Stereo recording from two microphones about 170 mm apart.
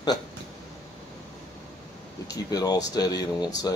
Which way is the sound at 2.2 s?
20° left (ahead or behind).